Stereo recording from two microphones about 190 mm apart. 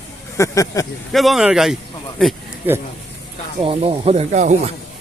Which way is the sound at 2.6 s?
10° right (ahead or behind).